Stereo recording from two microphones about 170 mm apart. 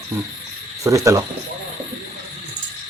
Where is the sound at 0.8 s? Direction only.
20° right (ahead or behind).